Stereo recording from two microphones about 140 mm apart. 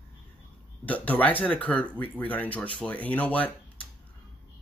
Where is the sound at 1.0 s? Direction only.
10° left (ahead or behind).